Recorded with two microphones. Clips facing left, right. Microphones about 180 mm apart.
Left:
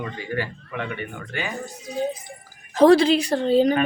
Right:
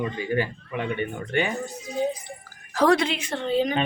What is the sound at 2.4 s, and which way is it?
A woman's voice, 25° left (ahead or behind).